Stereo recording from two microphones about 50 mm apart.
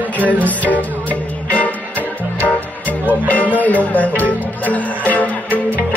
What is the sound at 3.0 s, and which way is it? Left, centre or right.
Music, left.